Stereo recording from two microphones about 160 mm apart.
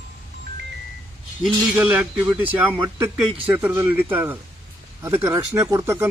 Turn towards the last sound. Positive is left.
turn(degrees=-20)  # may be behind; listen again after turning